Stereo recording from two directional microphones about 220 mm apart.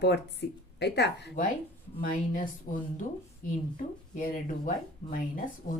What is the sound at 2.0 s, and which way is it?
Speech, 40° left (ahead or behind).